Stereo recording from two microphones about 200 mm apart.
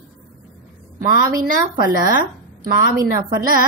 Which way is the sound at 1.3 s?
45° right (ahead or behind).